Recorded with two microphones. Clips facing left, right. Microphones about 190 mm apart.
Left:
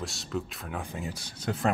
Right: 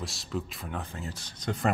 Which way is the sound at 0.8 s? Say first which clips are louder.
Left 3 dB; 15° left (ahead or behind).